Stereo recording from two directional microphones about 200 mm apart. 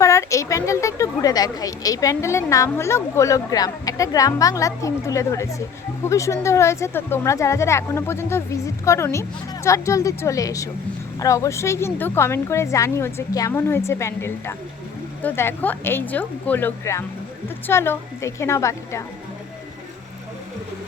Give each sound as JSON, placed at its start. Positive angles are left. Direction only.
{"t": 0.0, "sound": "a woman's voice", "side_deg": 15}